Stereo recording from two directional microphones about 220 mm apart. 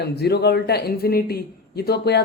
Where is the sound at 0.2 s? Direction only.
45° left (ahead or behind).